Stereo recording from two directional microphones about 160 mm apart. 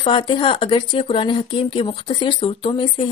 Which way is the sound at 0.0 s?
35° left (ahead or behind).